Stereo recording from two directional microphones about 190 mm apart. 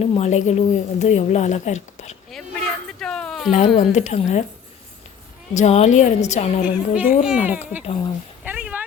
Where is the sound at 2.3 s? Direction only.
5° left (ahead or behind).